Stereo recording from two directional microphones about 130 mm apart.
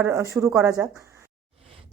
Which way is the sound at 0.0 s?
25° right (ahead or behind).